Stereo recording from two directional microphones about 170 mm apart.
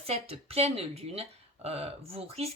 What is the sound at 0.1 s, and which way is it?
Speech, 35° right (ahead or behind).